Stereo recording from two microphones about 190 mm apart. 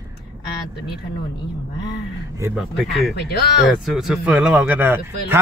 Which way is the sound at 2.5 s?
Centre (ahead or behind).